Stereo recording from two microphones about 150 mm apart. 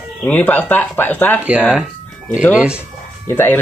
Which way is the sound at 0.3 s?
10° left (ahead or behind).